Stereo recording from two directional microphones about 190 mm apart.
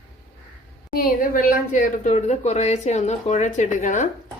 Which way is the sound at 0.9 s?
45° left (ahead or behind).